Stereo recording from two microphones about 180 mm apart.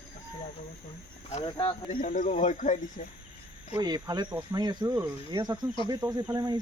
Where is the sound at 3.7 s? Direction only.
20° right (ahead or behind).